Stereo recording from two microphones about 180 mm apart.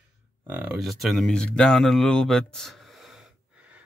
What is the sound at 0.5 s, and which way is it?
Speech, 10° right (ahead or behind).